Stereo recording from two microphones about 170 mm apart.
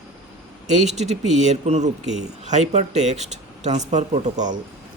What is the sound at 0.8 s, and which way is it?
Speech, 40° right (ahead or behind).